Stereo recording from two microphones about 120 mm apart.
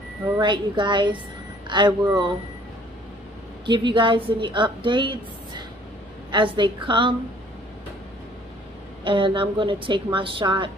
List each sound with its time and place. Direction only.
0.4 s a woman's voice: 40° right (ahead or behind)
3.6 s a woman's voice: 40° right (ahead or behind)
9.0 s a woman's voice: 45° right (ahead or behind)